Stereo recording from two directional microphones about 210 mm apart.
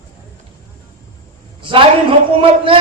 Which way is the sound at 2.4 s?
25° right (ahead or behind).